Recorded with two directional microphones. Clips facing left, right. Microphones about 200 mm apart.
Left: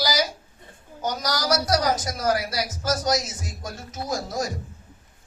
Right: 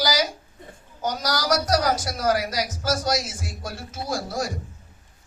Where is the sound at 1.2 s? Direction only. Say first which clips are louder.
Even; 15° left (ahead or behind).